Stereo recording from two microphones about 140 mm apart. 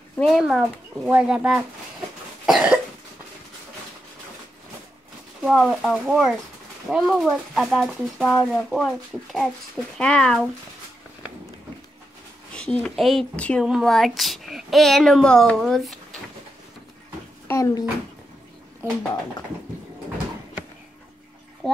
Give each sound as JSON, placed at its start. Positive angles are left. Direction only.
{"t": 0.1, "sound": "speech", "side_deg": 10}
{"t": 0.4, "sound": "speech", "side_deg": -5}
{"t": 2.4, "sound": "cough", "side_deg": -5}
{"t": 5.5, "sound": "speech", "side_deg": 0}
{"t": 12.5, "sound": "speech", "side_deg": 10}
{"t": 17.5, "sound": "speech", "side_deg": 20}